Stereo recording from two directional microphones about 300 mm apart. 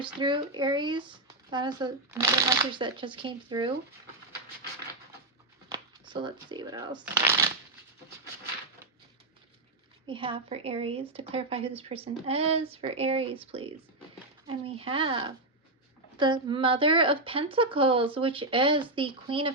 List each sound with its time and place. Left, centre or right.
0.2 s speech: centre
5.7 s speech: centre
10.1 s speech: centre